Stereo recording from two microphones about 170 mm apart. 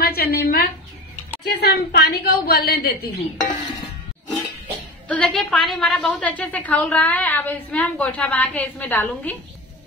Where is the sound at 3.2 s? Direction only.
45° left (ahead or behind).